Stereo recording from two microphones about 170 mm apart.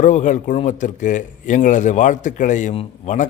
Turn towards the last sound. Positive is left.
turn(degrees=45)  # may be behind; listen again after turning